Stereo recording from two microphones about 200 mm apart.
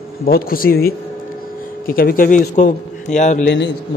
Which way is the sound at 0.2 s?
50° left (ahead or behind).